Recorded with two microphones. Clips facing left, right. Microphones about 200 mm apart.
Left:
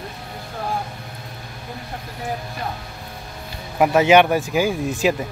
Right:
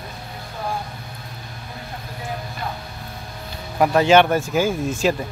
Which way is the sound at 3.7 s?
15° left (ahead or behind).